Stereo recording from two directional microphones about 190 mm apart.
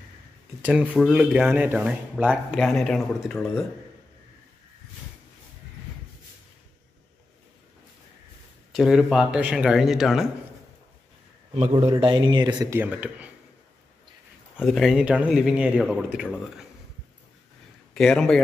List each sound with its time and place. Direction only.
0.7 s speech: 5° right (ahead or behind)
8.7 s speech: 5° right (ahead or behind)
11.7 s speech: 25° right (ahead or behind); by 13.3 s 10° right (ahead or behind)
14.6 s speech: centre (ahead or behind)
17.9 s speech: 5° left (ahead or behind)